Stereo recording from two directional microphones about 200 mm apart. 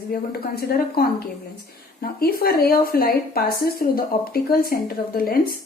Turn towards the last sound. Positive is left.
turn(degrees=50)  # may be behind; listen again after turning